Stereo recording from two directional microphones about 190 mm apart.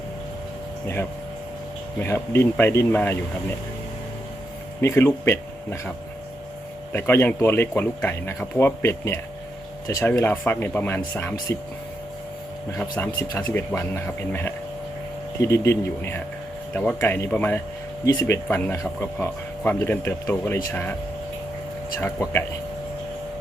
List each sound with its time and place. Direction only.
2.0 s speech: 15° left (ahead or behind)
4.8 s speech: 15° left (ahead or behind)
6.9 s speech: 10° left (ahead or behind)
12.7 s speech: 15° left (ahead or behind)
16.7 s speech: 10° left (ahead or behind)
22.0 s speech: 10° left (ahead or behind)